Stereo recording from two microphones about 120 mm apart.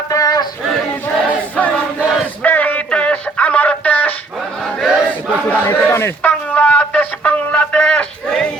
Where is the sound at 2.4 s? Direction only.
15° left (ahead or behind).